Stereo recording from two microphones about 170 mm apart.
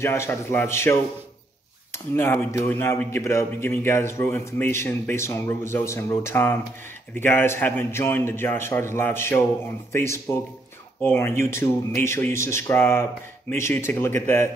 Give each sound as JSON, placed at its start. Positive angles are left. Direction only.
{"t": 0.0, "sound": "a man's voice", "side_deg": 15}
{"t": 2.1, "sound": "a man's voice", "side_deg": 10}